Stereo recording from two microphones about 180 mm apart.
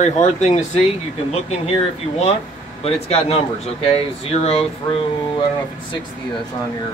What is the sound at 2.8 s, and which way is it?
Speech, 35° left (ahead or behind).